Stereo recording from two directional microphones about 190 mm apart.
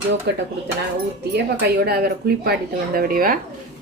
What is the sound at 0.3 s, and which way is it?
Speech, 60° right (ahead or behind).